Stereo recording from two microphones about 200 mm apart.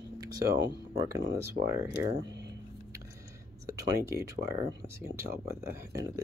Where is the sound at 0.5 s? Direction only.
60° right (ahead or behind).